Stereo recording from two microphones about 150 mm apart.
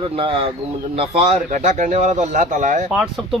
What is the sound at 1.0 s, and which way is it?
Speech, 50° right (ahead or behind).